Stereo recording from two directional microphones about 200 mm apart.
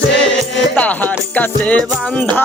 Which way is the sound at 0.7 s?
10° left (ahead or behind).